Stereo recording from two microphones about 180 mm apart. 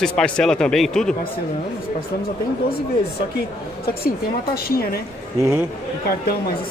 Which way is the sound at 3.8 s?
60° left (ahead or behind).